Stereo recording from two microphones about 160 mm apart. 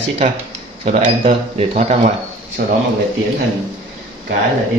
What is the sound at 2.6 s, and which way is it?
Speech, 65° right (ahead or behind).